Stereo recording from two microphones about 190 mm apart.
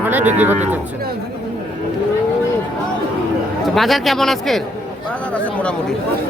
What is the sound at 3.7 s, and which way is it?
Speech, centre (ahead or behind).